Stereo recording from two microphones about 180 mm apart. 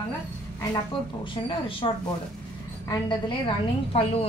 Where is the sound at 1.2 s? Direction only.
25° left (ahead or behind).